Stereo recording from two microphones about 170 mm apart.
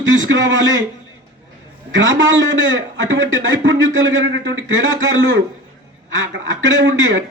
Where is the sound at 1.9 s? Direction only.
90° right.